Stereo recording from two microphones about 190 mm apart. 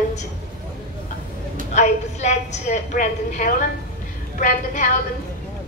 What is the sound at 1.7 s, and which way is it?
A woman's voice, 35° left (ahead or behind).